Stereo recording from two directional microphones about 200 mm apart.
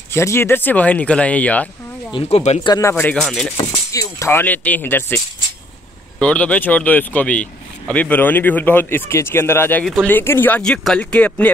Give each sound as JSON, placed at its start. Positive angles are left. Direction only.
{"t": 0.1, "sound": "speech", "side_deg": 15}
{"t": 2.1, "sound": "speech", "side_deg": 30}
{"t": 2.7, "sound": "speech", "side_deg": 15}
{"t": 3.9, "sound": "speech", "side_deg": 15}